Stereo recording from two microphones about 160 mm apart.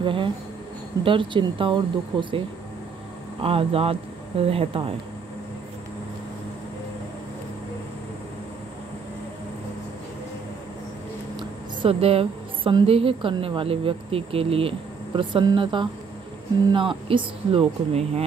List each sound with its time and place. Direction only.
0.0 s speech: 30° right (ahead or behind)
11.3 s a woman's voice: 35° right (ahead or behind)